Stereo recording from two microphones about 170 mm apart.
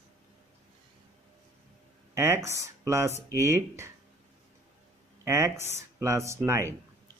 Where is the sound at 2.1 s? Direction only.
15° right (ahead or behind).